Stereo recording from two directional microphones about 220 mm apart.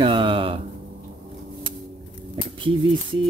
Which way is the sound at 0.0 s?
25° right (ahead or behind).